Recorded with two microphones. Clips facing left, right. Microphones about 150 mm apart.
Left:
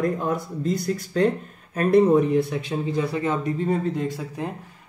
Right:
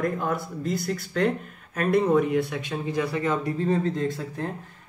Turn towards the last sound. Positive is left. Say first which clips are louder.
# even
turn(degrees=15)  # may be behind; listen again after turning